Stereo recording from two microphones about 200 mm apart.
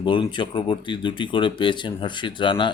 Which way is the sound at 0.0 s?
25° left (ahead or behind).